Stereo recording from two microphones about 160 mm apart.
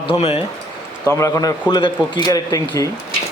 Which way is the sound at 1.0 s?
20° left (ahead or behind).